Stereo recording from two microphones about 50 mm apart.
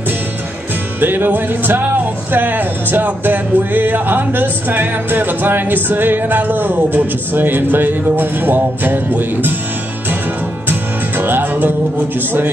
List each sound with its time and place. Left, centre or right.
1.0 s speech: right
10.7 s music: right